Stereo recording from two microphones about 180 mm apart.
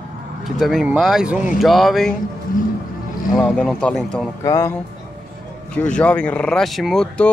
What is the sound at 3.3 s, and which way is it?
Speech, 5° left (ahead or behind).